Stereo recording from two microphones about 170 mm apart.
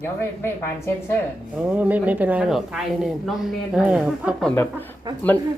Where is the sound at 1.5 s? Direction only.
10° right (ahead or behind).